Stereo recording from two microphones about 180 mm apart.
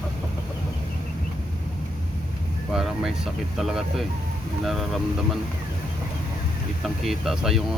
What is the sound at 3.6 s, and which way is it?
Speech, centre (ahead or behind).